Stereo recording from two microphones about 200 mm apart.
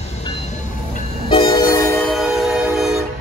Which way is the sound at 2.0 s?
Centre (ahead or behind).